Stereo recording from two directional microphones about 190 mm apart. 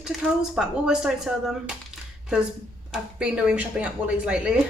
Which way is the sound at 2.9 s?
5° right (ahead or behind).